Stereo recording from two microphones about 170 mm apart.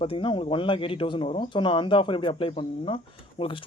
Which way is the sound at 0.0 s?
30° left (ahead or behind).